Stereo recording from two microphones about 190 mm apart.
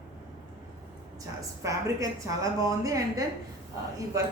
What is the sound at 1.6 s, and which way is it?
A woman's voice, 15° right (ahead or behind).